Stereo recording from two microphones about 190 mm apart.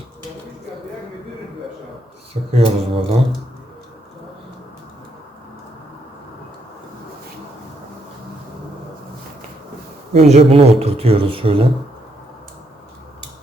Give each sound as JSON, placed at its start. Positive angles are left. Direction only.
{"t": 2.6, "sound": "speech", "side_deg": -30}
{"t": 10.1, "sound": "speech", "side_deg": -35}